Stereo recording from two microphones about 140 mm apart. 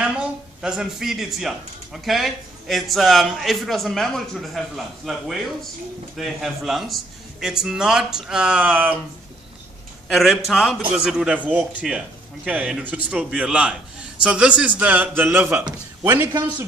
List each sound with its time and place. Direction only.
0.0 s a sound: 5° right (ahead or behind)
2.0 s a man's voice: centre (ahead or behind)
10.0 s a man's voice: centre (ahead or behind)